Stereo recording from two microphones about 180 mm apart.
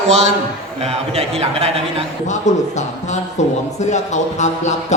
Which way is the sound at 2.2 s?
40° left (ahead or behind).